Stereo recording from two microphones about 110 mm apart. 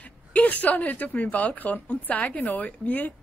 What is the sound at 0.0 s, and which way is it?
A woman's voice, 15° left (ahead or behind).